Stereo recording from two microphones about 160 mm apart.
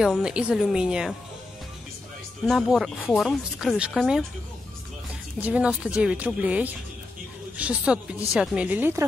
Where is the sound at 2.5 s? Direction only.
Centre (ahead or behind).